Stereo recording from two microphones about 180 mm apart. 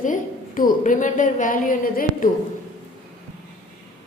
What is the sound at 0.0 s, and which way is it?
A woman's voice, 50° left (ahead or behind).